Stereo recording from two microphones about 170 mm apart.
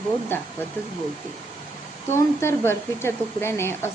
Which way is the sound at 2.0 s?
15° left (ahead or behind).